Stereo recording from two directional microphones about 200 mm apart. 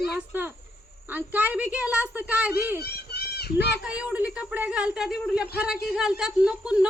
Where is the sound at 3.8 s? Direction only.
5° right (ahead or behind).